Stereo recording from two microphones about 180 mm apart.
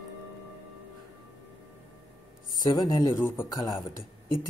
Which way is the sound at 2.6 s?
20° left (ahead or behind).